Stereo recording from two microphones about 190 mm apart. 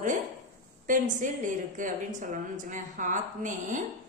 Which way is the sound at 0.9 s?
40° right (ahead or behind).